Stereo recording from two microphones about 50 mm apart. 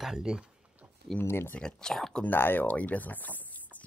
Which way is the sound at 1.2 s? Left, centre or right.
Left.